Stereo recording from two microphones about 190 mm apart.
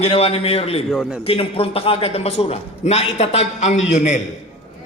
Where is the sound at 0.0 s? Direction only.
30° left (ahead or behind).